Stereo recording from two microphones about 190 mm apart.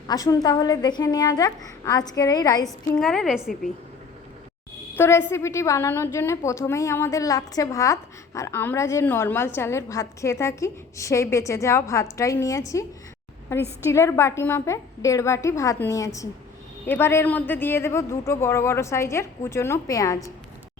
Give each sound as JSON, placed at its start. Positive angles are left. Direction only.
{"t": 0.1, "sound": "a woman's voice", "side_deg": 20}
{"t": 2.6, "sound": "a woman's voice", "side_deg": 0}
{"t": 4.9, "sound": "a woman's voice", "side_deg": 15}